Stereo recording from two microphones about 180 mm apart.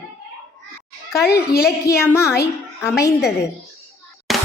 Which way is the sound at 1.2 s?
60° left (ahead or behind).